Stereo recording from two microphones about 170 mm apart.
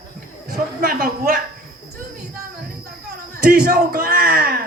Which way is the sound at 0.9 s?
55° right (ahead or behind).